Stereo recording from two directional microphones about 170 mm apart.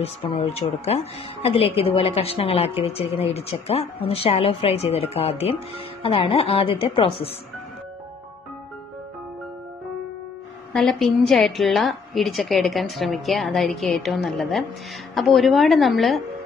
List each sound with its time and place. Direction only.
0.0 s a woman's voice: 35° left (ahead or behind)
10.7 s a woman's voice: centre (ahead or behind)